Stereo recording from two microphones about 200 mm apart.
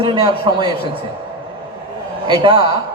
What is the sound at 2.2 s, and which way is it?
Speech, 25° right (ahead or behind).